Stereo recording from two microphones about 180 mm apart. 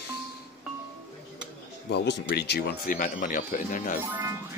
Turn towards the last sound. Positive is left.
turn(degrees=-15)  # may be behind; listen again after turning